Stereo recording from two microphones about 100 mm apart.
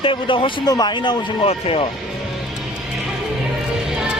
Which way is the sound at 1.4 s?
80° left.